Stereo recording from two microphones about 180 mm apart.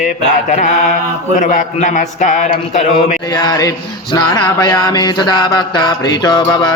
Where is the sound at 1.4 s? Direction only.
40° left (ahead or behind).